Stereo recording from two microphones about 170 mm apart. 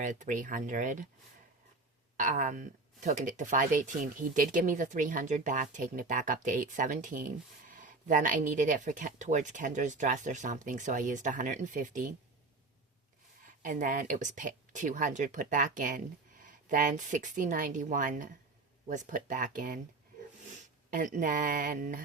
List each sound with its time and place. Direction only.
0.0 s speech: 45° right (ahead or behind)
2.1 s speech: 50° right (ahead or behind)
13.6 s speech: 50° right (ahead or behind)